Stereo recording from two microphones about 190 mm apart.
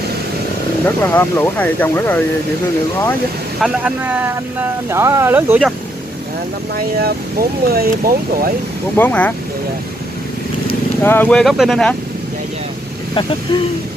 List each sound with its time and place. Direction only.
0.8 s speech: 10° left (ahead or behind)
3.6 s speech: 10° right (ahead or behind)
7.0 s speech: 55° right (ahead or behind)
8.9 s speech: 10° left (ahead or behind)
11.0 s speech: 10° left (ahead or behind)